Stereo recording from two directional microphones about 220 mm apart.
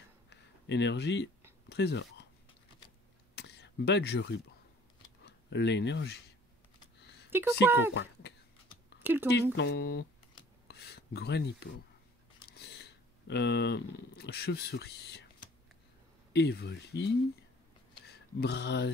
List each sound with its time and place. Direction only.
0.3 s a sound: 55° left (ahead or behind)
1.7 s speech: 50° left (ahead or behind)
3.3 s a sound: 50° left (ahead or behind)
5.2 s speech: 50° left (ahead or behind)
7.2 s speech: 10° right (ahead or behind)
7.9 s speech: 50° left (ahead or behind)
9.0 s speech: 10° right (ahead or behind)
9.3 s speech: 50° left (ahead or behind)
16.3 s speech: 45° left (ahead or behind)